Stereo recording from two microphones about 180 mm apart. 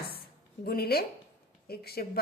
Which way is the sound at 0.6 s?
60° left (ahead or behind).